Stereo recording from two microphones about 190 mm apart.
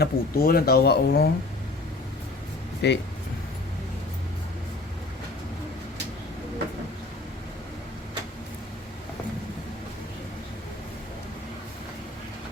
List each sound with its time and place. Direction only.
0.0 s speech: 55° left (ahead or behind)
2.8 s speech: 65° left (ahead or behind)